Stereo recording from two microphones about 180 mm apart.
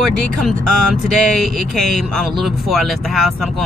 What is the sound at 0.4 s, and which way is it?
A woman's voice, 5° left (ahead or behind).